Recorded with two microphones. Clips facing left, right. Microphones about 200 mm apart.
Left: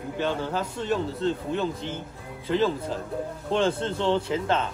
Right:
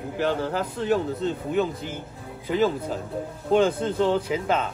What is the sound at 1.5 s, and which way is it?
Speech, 10° right (ahead or behind).